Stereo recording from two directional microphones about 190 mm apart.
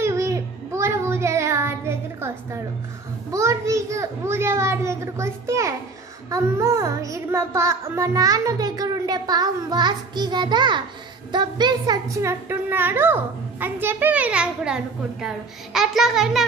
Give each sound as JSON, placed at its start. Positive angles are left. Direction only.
{"t": 0.0, "sound": "child singing", "side_deg": -15}
{"t": 3.3, "sound": "a child's voice", "side_deg": -15}
{"t": 6.3, "sound": "child singing", "side_deg": -15}
{"t": 11.3, "sound": "a child's voice", "side_deg": -20}